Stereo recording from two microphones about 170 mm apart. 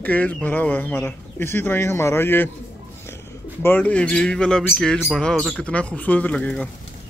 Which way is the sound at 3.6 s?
10° left (ahead or behind).